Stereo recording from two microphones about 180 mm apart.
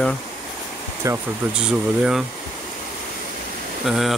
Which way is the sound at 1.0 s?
15° right (ahead or behind).